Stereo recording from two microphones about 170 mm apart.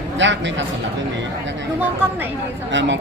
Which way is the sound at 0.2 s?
90° right.